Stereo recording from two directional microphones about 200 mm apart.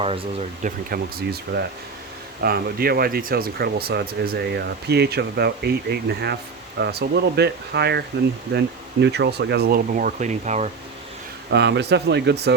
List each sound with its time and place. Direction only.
0.0 s speech: 30° right (ahead or behind)
0.9 s speech: 50° right (ahead or behind)
11.5 s speech: 60° right (ahead or behind)